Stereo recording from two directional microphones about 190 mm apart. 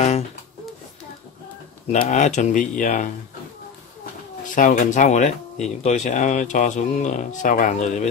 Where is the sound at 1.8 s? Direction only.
35° left (ahead or behind).